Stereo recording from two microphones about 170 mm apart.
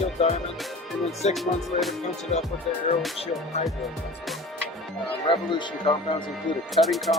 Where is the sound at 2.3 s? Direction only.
40° left (ahead or behind).